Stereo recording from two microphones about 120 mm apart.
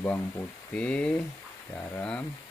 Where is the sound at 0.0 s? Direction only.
15° left (ahead or behind).